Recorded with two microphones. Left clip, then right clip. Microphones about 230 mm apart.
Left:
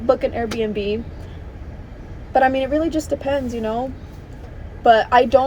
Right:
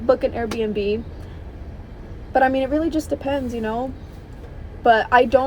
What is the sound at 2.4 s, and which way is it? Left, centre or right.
Speech, right.